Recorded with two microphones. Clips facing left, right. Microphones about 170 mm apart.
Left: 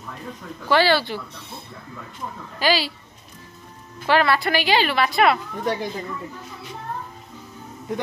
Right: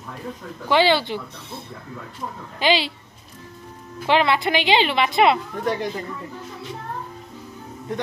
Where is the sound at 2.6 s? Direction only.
20° right (ahead or behind).